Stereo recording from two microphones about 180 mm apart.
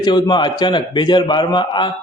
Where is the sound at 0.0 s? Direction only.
25° left (ahead or behind).